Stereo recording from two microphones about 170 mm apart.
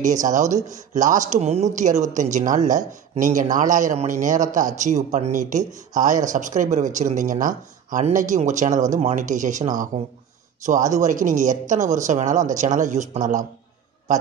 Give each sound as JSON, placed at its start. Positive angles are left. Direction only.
{"t": 0.0, "sound": "a man's voice", "side_deg": -45}